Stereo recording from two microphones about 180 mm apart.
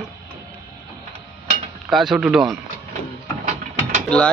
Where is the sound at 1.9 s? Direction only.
Centre (ahead or behind).